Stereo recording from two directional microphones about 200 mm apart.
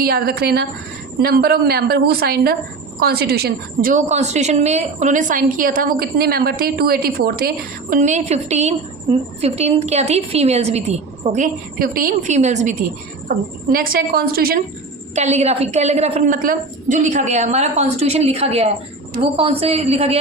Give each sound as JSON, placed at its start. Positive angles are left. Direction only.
{"t": 0.0, "sound": "a woman's voice", "side_deg": -50}
{"t": 13.2, "sound": "a woman's voice", "side_deg": -45}
{"t": 15.1, "sound": "a woman's voice", "side_deg": -35}